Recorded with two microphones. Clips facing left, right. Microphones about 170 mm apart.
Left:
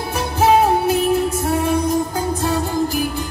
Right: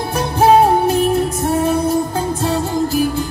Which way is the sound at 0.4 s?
35° right (ahead or behind).